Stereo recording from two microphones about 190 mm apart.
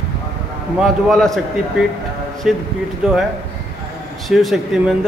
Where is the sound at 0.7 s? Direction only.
Centre (ahead or behind).